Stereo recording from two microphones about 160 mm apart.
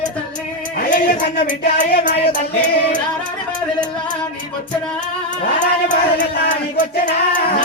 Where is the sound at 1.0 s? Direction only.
55° left (ahead or behind).